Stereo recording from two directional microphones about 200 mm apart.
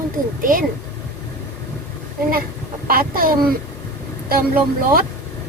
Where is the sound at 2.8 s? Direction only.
45° right (ahead or behind).